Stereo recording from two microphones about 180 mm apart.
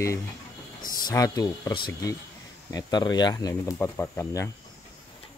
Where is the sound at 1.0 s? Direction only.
20° left (ahead or behind).